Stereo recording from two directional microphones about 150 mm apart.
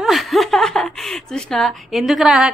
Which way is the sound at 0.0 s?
Centre (ahead or behind).